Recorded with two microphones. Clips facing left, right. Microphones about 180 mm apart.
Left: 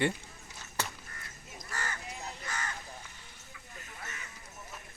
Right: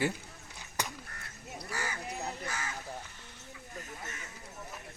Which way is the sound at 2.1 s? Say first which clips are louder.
Right 5 dB; 60° right (ahead or behind).